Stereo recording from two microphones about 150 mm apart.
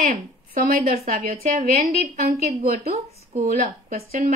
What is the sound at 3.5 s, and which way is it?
Speech, 65° right (ahead or behind).